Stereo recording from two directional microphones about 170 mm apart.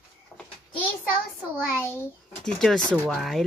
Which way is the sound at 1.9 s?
10° left (ahead or behind).